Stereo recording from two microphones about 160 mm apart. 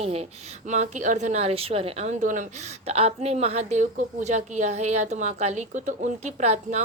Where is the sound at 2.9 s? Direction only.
40° right (ahead or behind).